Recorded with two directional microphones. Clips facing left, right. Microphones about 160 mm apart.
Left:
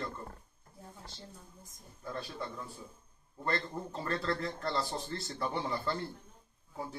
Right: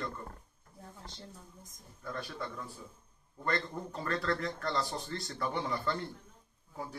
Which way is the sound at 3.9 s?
30° left (ahead or behind).